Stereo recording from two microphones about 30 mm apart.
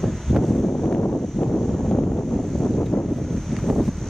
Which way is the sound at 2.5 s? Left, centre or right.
Centre.